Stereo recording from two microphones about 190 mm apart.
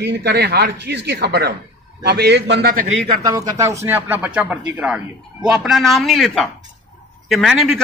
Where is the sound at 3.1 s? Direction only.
20° right (ahead or behind).